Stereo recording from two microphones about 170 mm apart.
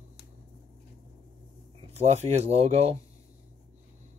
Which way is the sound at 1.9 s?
40° right (ahead or behind).